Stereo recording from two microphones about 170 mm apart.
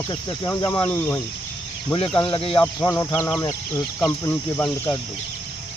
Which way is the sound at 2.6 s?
15° left (ahead or behind).